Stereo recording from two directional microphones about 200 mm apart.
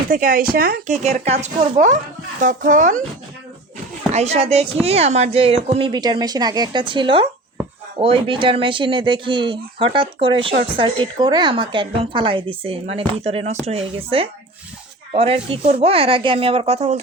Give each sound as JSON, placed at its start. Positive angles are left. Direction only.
{"t": 0.1, "sound": "speech", "side_deg": -45}
{"t": 1.0, "sound": "speech", "side_deg": -30}
{"t": 4.1, "sound": "speech", "side_deg": -30}